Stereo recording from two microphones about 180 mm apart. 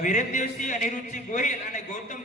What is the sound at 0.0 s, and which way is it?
A man's voice, 40° left (ahead or behind).